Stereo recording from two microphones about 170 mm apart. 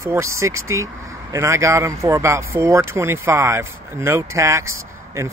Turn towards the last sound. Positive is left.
turn(degrees=-15)  # may be behind; listen again after turning